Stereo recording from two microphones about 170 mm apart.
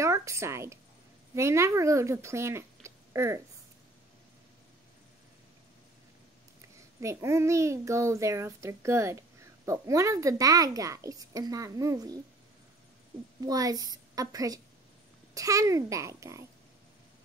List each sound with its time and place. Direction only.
0.0 s a woman's voice: 15° right (ahead or behind)
7.0 s a child's voice: 15° right (ahead or behind)
13.5 s a woman's voice: 20° right (ahead or behind)